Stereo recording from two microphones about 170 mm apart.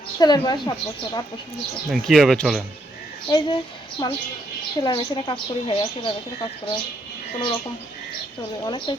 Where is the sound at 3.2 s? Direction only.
25° left (ahead or behind).